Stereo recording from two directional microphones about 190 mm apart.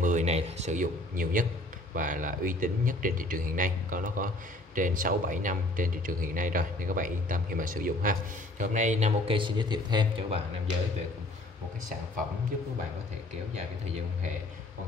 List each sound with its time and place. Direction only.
0.0 s speech: 40° right (ahead or behind)